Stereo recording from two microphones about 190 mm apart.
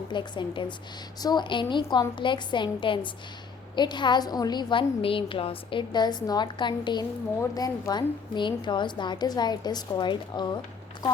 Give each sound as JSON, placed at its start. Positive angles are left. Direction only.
{"t": 0.1, "sound": "a woman's voice", "side_deg": 25}